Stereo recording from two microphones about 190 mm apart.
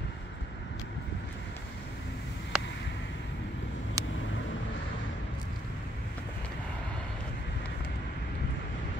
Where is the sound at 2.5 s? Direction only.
5° right (ahead or behind).